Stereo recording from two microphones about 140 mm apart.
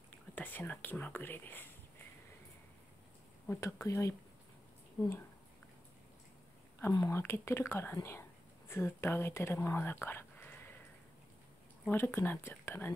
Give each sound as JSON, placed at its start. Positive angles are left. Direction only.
{"t": 0.3, "sound": "speech", "side_deg": 15}
{"t": 3.4, "sound": "speech", "side_deg": 20}
{"t": 6.8, "sound": "speech", "side_deg": 25}
{"t": 11.8, "sound": "speech", "side_deg": 15}